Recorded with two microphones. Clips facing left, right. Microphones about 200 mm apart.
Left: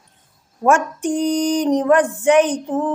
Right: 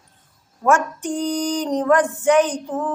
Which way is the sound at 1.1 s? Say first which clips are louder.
Left 4 dB; 15° left (ahead or behind).